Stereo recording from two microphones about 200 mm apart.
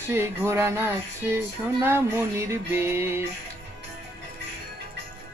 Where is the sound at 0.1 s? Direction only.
10° right (ahead or behind).